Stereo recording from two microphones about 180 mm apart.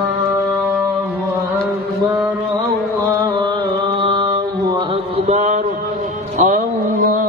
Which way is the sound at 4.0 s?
25° right (ahead or behind).